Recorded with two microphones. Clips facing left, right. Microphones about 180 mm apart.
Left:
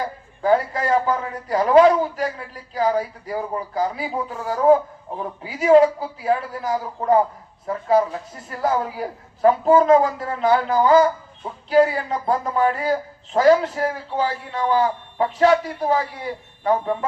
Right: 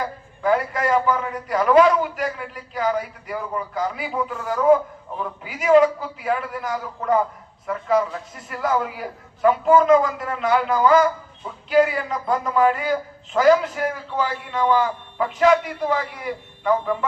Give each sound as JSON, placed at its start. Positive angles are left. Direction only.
{"t": 0.4, "sound": "a man's voice", "side_deg": 30}